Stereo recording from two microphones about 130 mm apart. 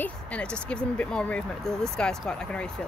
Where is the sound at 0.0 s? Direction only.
10° left (ahead or behind).